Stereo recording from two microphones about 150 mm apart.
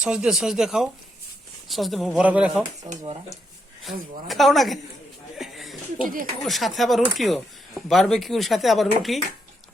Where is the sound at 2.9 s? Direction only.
50° right (ahead or behind).